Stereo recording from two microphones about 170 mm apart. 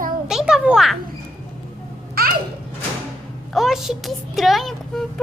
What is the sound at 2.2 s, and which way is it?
Babbling, 60° right (ahead or behind).